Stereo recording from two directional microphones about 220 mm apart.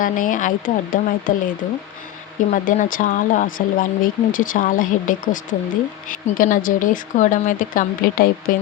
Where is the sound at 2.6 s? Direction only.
35° left (ahead or behind).